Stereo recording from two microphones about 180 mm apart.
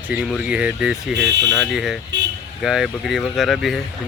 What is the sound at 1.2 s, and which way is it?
Speech, 75° right (ahead or behind).